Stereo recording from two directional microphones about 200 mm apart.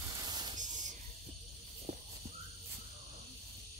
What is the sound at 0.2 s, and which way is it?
Spray, 20° right (ahead or behind).